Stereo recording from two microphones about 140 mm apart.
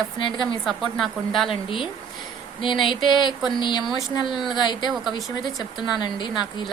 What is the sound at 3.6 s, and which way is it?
Speech, 35° left (ahead or behind).